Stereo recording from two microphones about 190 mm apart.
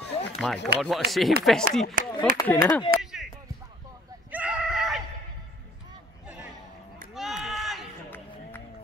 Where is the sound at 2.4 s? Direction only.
15° left (ahead or behind).